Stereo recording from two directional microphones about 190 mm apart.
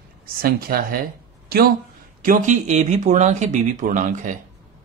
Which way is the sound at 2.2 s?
40° right (ahead or behind).